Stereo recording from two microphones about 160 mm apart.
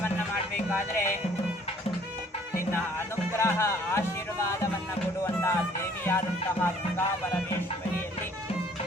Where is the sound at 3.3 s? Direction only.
15° left (ahead or behind).